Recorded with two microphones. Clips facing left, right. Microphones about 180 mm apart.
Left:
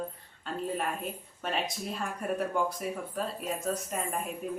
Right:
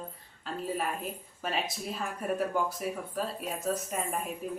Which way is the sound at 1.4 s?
Centre (ahead or behind).